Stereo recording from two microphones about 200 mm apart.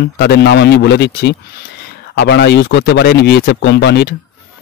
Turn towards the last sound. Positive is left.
turn(degrees=55)  # may be behind; listen again after turning